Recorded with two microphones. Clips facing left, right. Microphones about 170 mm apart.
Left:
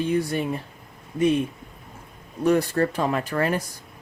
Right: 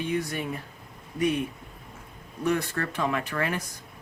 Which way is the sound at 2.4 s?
35° left (ahead or behind).